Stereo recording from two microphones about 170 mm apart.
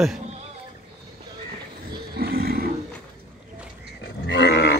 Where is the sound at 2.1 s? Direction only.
65° right (ahead or behind).